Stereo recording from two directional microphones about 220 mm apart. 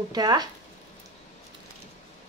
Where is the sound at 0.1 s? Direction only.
20° right (ahead or behind).